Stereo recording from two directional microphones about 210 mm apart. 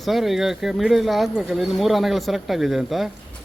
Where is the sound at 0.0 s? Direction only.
Centre (ahead or behind).